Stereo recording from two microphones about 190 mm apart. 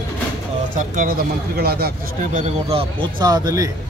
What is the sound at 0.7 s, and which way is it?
Speech, 45° right (ahead or behind).